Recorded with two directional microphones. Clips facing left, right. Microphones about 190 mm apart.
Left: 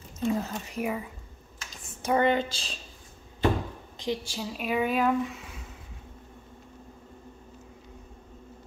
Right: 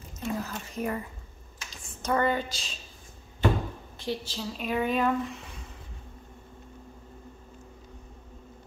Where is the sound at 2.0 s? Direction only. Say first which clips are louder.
Left 2 dB; 15° left (ahead or behind).